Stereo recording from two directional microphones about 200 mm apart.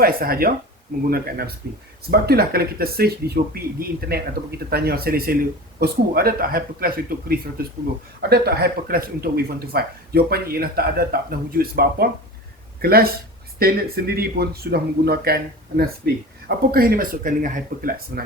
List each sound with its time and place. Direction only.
0.0 s speech: 50° right (ahead or behind)
2.0 s speech: 50° right (ahead or behind)